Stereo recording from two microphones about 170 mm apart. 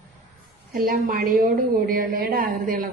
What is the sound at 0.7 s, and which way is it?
A woman's voice, 55° right (ahead or behind).